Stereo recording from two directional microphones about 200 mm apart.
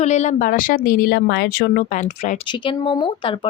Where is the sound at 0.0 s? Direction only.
35° left (ahead or behind).